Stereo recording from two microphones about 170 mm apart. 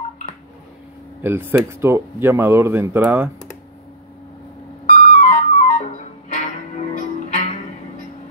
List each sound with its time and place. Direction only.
1.2 s speech: 15° right (ahead or behind)
4.8 s flute: 45° left (ahead or behind)